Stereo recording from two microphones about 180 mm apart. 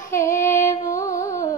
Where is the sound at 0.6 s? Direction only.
15° left (ahead or behind).